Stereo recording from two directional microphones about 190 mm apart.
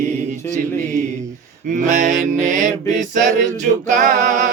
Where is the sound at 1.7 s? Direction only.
40° right (ahead or behind).